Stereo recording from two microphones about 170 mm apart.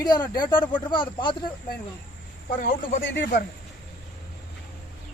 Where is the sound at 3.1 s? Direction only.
90° left.